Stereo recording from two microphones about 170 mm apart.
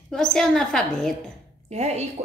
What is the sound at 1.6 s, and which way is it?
Speech, 40° right (ahead or behind).